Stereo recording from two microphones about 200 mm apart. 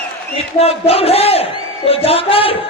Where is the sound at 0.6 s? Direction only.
30° left (ahead or behind).